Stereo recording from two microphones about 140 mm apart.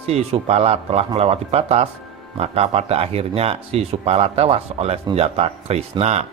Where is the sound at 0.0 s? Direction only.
45° right (ahead or behind).